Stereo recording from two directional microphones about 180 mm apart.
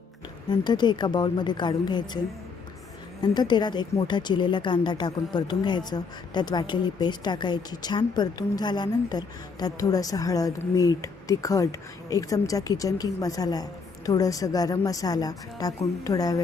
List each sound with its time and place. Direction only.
0.5 s speech: 25° left (ahead or behind)
3.2 s speech: 25° left (ahead or behind)